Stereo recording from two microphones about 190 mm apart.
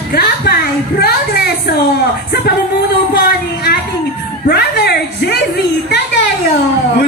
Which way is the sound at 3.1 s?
55° left (ahead or behind).